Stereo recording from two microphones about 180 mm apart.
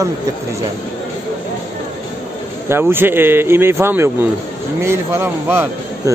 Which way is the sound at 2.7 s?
10° right (ahead or behind).